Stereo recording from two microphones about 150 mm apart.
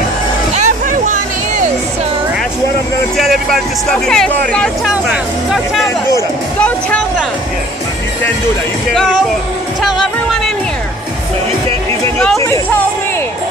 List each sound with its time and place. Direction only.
0.9 s music: 60° right (ahead or behind)
3.9 s speech: 5° left (ahead or behind)
9.8 s music: centre (ahead or behind)